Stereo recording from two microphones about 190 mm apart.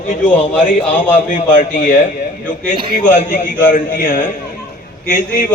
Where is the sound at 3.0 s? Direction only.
40° left (ahead or behind).